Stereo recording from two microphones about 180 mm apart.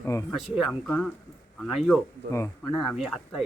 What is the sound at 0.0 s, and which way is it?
Speech, 15° left (ahead or behind).